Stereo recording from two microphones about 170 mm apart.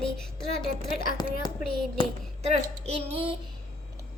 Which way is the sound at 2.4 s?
40° right (ahead or behind).